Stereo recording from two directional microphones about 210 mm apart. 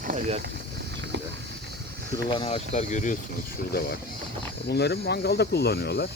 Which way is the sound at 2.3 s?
25° left (ahead or behind).